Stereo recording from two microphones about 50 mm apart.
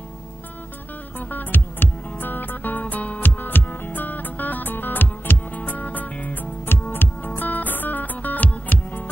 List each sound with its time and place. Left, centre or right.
1.3 s music: left
6.6 s music: left